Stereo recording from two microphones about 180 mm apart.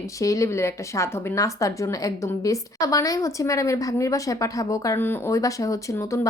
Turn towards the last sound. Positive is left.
turn(degrees=15)  # may be behind; listen again after turning